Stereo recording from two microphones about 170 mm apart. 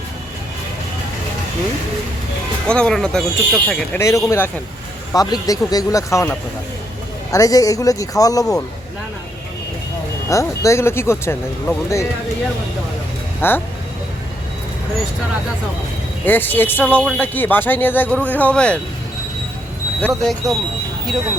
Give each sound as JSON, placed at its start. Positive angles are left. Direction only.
{"t": 2.6, "sound": "speech", "side_deg": 5}
{"t": 3.9, "sound": "speech", "side_deg": 20}
{"t": 10.2, "sound": "speech", "side_deg": 20}
{"t": 13.4, "sound": "speech", "side_deg": 15}
{"t": 16.2, "sound": "speech", "side_deg": 10}
{"t": 20.0, "sound": "speech", "side_deg": 5}